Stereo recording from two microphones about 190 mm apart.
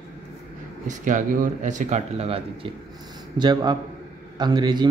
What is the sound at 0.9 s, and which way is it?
Speech, 40° right (ahead or behind).